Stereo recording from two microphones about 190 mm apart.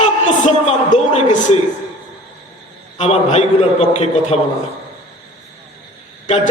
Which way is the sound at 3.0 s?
35° left (ahead or behind).